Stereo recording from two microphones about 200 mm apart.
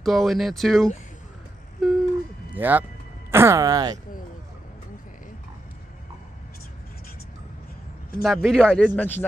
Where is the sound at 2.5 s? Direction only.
10° right (ahead or behind).